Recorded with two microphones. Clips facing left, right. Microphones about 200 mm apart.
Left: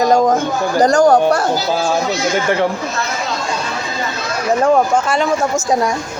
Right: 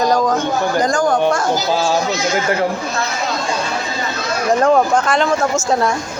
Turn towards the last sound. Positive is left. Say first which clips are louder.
# even
turn(degrees=10)  # may be behind; listen again after turning